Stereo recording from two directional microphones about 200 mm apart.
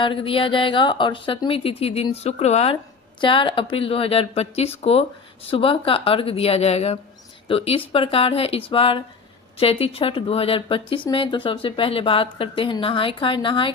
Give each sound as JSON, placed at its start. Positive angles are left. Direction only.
{"t": 0.0, "sound": "speech", "side_deg": 25}